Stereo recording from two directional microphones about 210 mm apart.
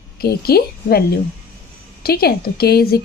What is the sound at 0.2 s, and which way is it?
Speech, 50° left (ahead or behind).